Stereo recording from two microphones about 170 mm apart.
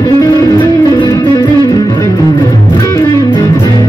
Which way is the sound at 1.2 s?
15° left (ahead or behind).